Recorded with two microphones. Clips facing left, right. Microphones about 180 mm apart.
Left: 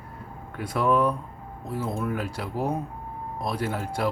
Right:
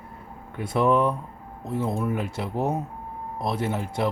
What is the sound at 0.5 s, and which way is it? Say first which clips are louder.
A man's voice: right 2 dB; 25° right (ahead or behind).